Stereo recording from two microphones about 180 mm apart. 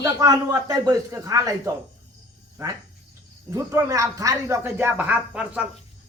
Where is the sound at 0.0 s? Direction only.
20° right (ahead or behind).